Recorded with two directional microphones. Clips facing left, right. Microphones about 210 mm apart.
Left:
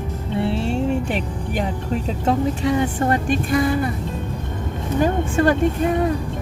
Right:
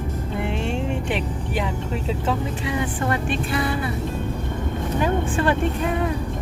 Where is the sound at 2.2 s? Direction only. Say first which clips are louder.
Left 10 dB; 40° left (ahead or behind).